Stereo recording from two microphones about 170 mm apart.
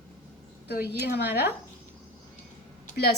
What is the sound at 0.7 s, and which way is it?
Speech, 70° left (ahead or behind).